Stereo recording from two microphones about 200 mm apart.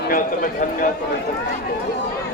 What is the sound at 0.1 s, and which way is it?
Speech, 45° left (ahead or behind).